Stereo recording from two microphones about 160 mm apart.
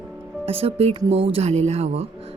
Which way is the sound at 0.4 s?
35° right (ahead or behind).